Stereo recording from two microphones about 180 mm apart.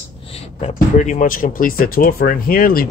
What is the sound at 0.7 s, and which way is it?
Speech, 40° left (ahead or behind).